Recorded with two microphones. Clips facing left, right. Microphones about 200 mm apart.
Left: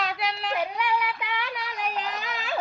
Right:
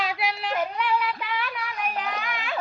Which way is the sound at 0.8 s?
15° left (ahead or behind).